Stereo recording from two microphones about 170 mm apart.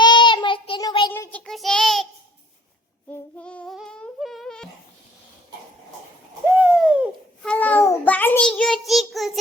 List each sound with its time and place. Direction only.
0.0 s child singing: 25° left (ahead or behind)
1.1 s child singing: 10° left (ahead or behind)
3.1 s humming: 5° left (ahead or behind)
6.6 s a sound: 5° right (ahead or behind)
7.4 s child singing: 10° left (ahead or behind)